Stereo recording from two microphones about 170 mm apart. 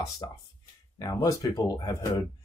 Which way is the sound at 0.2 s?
25° left (ahead or behind).